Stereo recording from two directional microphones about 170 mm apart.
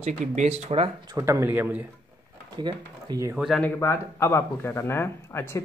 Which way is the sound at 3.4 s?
Centre (ahead or behind).